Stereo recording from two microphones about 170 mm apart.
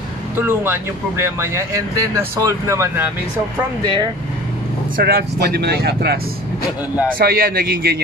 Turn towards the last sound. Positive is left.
turn(degrees=-65)  # may be behind; listen again after turning